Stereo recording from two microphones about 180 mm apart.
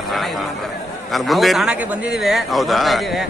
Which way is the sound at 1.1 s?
Centre (ahead or behind).